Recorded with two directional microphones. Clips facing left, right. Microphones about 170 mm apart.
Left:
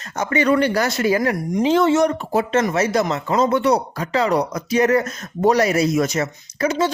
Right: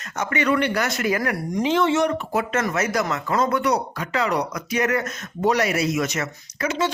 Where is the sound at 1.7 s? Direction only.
40° left (ahead or behind).